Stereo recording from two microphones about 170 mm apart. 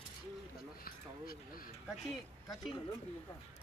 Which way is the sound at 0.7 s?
60° left (ahead or behind).